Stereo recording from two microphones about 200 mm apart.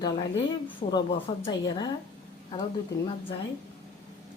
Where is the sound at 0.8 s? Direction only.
20° left (ahead or behind).